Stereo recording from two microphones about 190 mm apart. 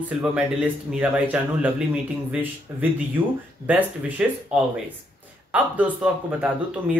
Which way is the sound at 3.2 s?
25° right (ahead or behind).